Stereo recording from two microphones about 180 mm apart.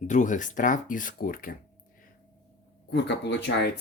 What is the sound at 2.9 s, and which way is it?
Speech, 70° left (ahead or behind).